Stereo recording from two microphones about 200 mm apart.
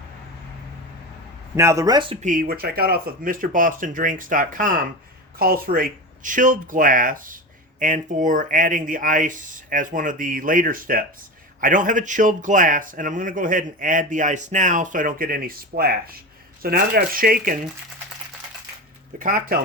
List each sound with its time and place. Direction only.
1.5 s speech: 15° right (ahead or behind)
2.2 s speech: 45° right (ahead or behind)
19.2 s speech: 45° right (ahead or behind)